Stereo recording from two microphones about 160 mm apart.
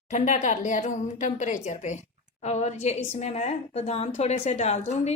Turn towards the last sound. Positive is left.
turn(degrees=45)  # may be behind; listen again after turning